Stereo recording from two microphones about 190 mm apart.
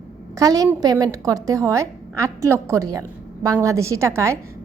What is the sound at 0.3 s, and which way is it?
A woman's voice, 20° right (ahead or behind).